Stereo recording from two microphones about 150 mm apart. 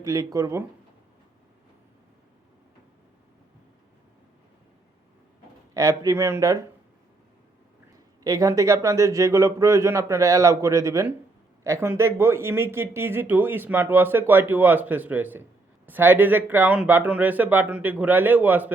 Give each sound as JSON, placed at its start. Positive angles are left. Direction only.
{"t": 0.0, "sound": "a man's voice", "side_deg": -20}
{"t": 5.7, "sound": "a man's voice", "side_deg": -20}
{"t": 8.2, "sound": "a man's voice", "side_deg": -20}